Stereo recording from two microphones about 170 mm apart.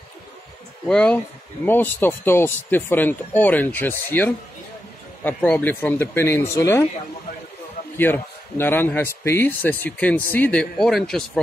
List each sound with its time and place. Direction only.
0.8 s speech: 5° left (ahead or behind)
8.0 s speech: 10° left (ahead or behind)